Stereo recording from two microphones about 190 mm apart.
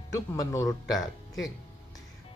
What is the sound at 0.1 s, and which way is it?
Speech, 15° left (ahead or behind).